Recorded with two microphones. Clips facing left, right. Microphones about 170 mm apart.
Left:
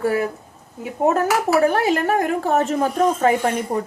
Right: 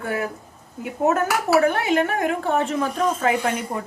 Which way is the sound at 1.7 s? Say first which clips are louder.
Left 2 dB; 40° left (ahead or behind).